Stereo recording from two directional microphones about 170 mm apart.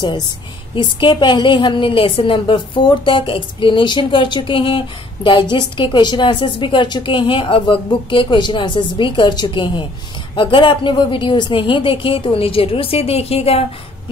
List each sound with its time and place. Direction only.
0.7 s a woman's voice: 30° left (ahead or behind)